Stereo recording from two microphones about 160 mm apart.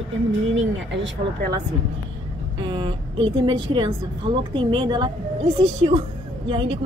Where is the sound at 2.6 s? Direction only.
30° right (ahead or behind).